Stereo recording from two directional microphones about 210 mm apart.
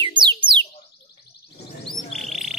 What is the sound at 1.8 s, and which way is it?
Frog, centre (ahead or behind).